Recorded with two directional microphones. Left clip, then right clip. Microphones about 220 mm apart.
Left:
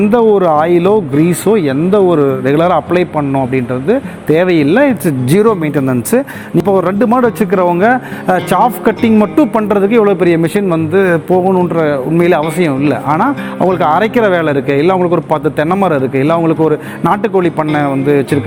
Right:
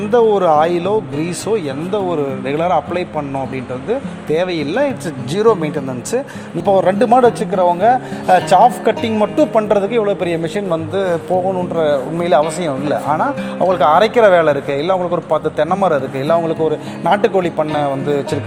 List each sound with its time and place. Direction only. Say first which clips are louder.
0.1 s speech: even; 35° left (ahead or behind)